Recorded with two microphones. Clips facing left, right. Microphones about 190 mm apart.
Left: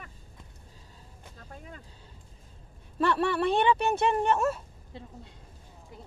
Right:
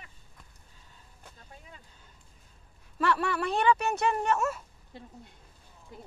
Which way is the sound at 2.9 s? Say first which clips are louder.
Left 2 dB; 30° left (ahead or behind).